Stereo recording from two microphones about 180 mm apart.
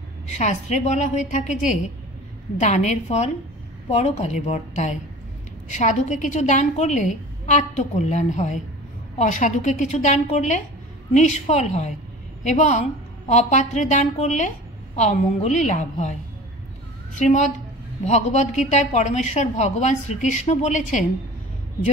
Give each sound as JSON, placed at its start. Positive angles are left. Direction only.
{"t": 0.4, "sound": "speech", "side_deg": 40}
{"t": 17.2, "sound": "a woman's voice", "side_deg": 40}